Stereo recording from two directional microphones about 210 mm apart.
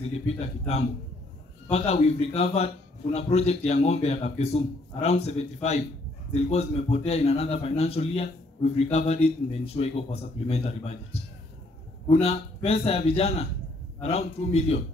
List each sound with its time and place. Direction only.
0.4 s a man's voice: 30° left (ahead or behind)
12.1 s a man's voice: 30° left (ahead or behind)